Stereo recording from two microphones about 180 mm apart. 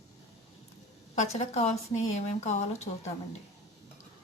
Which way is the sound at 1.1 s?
35° left (ahead or behind).